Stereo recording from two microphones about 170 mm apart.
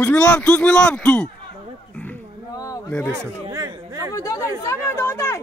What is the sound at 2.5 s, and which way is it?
Speech, 20° left (ahead or behind).